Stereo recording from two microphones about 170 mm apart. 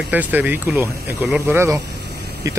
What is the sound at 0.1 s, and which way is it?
Speech, 10° right (ahead or behind).